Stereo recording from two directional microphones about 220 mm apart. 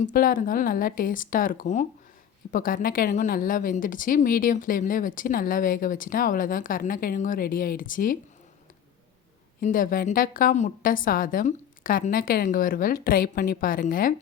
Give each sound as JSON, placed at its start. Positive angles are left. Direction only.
{"t": 0.0, "sound": "a woman's voice", "side_deg": 40}
{"t": 9.6, "sound": "a woman's voice", "side_deg": 40}